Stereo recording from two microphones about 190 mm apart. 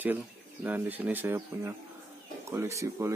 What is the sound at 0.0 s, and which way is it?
Speech, 10° right (ahead or behind).